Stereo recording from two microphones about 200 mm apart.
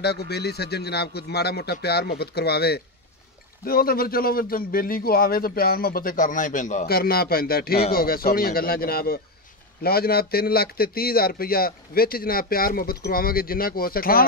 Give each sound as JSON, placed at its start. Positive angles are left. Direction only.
{"t": 0.0, "sound": "a man's voice", "side_deg": 55}